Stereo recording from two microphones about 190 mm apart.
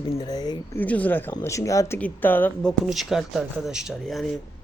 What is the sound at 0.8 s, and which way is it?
Speech, 10° left (ahead or behind).